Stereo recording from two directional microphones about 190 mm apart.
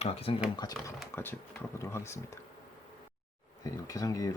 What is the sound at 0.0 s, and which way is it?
Speech, 30° left (ahead or behind).